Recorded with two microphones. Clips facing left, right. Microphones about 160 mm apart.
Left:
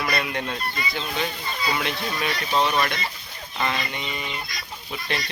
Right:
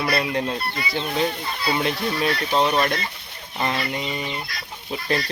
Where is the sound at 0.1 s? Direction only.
30° right (ahead or behind).